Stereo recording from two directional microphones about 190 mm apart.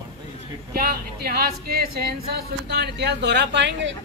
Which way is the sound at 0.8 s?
50° right (ahead or behind).